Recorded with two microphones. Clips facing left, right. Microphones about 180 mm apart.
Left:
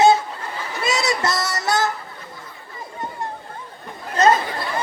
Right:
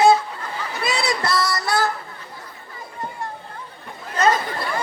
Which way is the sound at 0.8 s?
30° right (ahead or behind).